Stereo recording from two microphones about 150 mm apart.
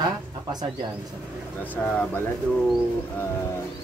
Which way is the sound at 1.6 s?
10° left (ahead or behind).